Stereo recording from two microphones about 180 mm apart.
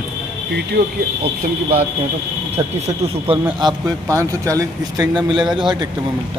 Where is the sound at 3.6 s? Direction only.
20° right (ahead or behind).